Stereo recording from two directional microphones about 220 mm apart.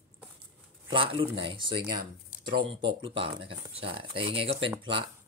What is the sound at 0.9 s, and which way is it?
Speech, 25° right (ahead or behind).